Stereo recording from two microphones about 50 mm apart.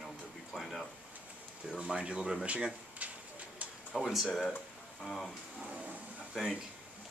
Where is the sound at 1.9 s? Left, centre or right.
Centre.